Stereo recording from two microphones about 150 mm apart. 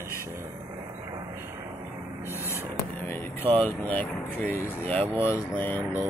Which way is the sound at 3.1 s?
10° left (ahead or behind).